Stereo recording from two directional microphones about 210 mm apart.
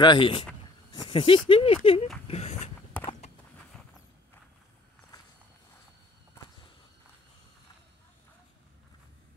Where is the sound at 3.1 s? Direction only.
30° left (ahead or behind).